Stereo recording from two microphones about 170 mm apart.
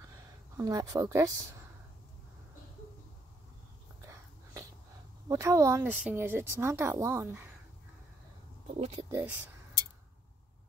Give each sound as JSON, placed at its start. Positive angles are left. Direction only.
{"t": 0.6, "sound": "speech", "side_deg": -20}
{"t": 5.3, "sound": "a woman's voice", "side_deg": -20}
{"t": 8.6, "sound": "speech", "side_deg": -40}
{"t": 9.1, "sound": "a woman's voice", "side_deg": -10}